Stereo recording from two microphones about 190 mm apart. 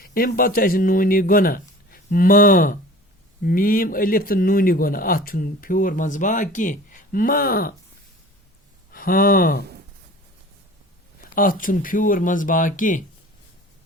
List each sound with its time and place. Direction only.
0.0 s speech: 50° left (ahead or behind)
8.9 s speech: 50° left (ahead or behind)
11.3 s speech: 45° left (ahead or behind)